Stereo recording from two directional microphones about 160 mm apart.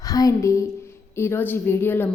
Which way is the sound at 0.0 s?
20° left (ahead or behind).